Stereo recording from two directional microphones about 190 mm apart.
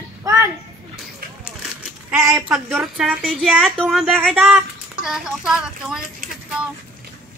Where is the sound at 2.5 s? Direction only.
Centre (ahead or behind).